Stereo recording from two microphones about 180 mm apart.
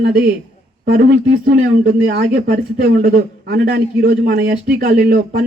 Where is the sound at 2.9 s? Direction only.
60° right (ahead or behind).